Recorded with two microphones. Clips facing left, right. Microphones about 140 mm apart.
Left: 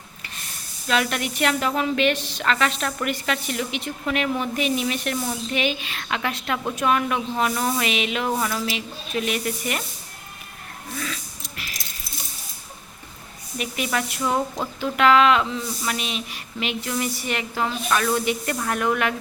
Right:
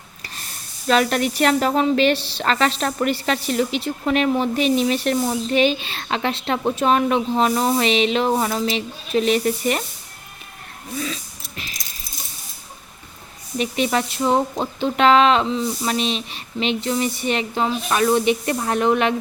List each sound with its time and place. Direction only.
0.9 s speech: 35° right (ahead or behind)
10.9 s a sound: 25° right (ahead or behind)
13.6 s speech: 30° right (ahead or behind)